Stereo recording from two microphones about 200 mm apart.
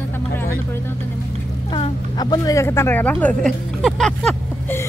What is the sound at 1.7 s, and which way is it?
A woman's voice, 20° left (ahead or behind).